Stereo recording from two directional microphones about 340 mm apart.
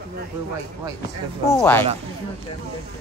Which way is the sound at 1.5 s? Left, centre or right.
Centre.